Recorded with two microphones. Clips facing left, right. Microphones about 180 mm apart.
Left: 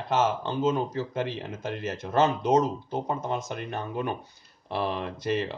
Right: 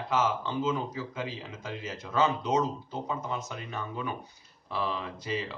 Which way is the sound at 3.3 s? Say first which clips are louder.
Left 5 dB; 65° left (ahead or behind).